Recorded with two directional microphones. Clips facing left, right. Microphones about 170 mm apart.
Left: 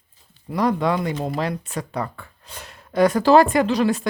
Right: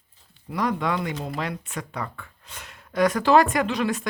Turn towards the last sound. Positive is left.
turn(degrees=35)  # may be behind; listen again after turning